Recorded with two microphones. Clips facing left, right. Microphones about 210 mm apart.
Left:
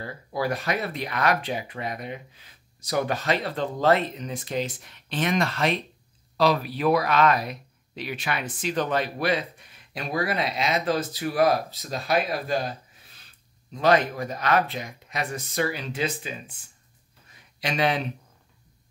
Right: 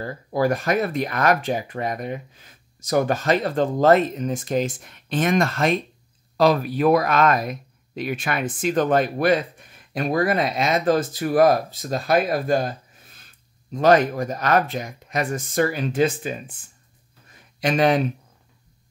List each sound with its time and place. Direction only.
0.0 s speech: 45° right (ahead or behind)
17.6 s speech: 50° right (ahead or behind)